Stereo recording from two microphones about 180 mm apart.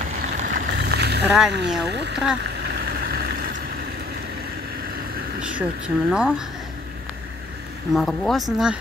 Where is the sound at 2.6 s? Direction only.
60° right (ahead or behind).